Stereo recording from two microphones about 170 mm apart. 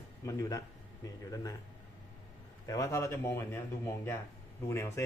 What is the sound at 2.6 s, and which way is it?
Speech, 20° left (ahead or behind).